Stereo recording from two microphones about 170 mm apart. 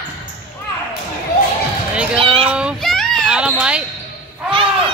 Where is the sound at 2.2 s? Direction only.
30° right (ahead or behind).